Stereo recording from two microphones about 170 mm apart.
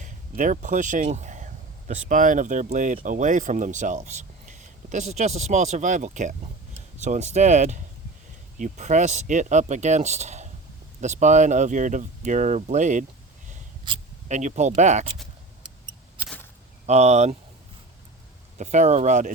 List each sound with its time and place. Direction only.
0.0 s speech: 50° right (ahead or behind)
14.3 s speech: 45° right (ahead or behind)
16.8 s speech: 40° right (ahead or behind)
18.5 s speech: 45° right (ahead or behind)